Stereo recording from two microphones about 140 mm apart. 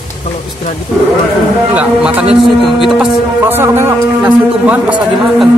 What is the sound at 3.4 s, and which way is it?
A man's voice, 15° right (ahead or behind).